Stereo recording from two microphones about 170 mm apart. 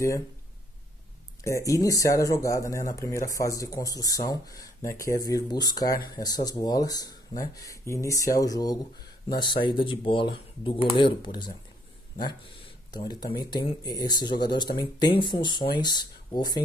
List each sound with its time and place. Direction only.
1.4 s speech: 20° left (ahead or behind)
12.9 s speech: 25° left (ahead or behind)